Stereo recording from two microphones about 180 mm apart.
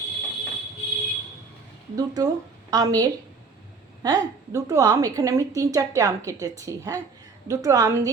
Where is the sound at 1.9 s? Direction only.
20° right (ahead or behind).